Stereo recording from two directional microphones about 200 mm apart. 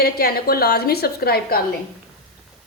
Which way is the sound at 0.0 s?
50° left (ahead or behind).